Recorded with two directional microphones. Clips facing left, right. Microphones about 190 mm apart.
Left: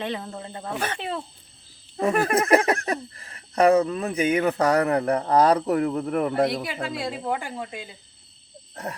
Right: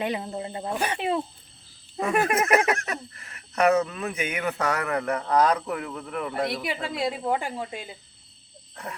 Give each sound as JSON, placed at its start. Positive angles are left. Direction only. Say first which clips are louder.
{"t": 0.0, "sound": "speech", "louder": "right 2 dB", "side_deg": -15}
{"t": 2.0, "sound": "speech", "louder": "left 2 dB", "side_deg": 35}
{"t": 6.8, "sound": "speech", "louder": "right 4 dB", "side_deg": -25}
{"t": 8.7, "sound": "frog", "louder": "left 4 dB", "side_deg": 40}